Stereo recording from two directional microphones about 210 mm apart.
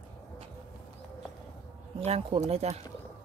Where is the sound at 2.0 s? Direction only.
30° right (ahead or behind).